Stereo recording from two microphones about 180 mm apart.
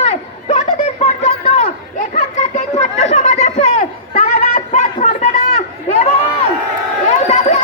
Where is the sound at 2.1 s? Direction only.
40° left (ahead or behind).